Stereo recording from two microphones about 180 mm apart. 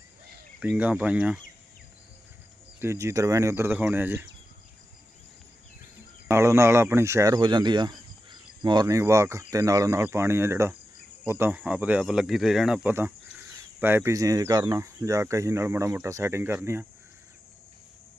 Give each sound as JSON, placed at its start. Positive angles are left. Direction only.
{"t": 0.6, "sound": "speech", "side_deg": -10}
{"t": 2.8, "sound": "speech", "side_deg": -15}
{"t": 6.2, "sound": "speech", "side_deg": -15}